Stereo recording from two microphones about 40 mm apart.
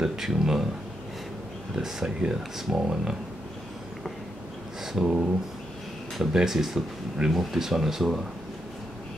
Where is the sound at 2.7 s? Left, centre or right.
Right.